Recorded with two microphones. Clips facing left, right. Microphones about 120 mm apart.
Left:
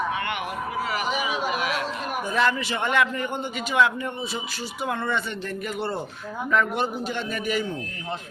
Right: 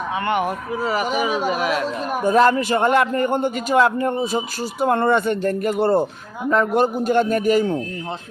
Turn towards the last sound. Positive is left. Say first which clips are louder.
# right 9 dB
turn(degrees=-45)  # may be behind; listen again after turning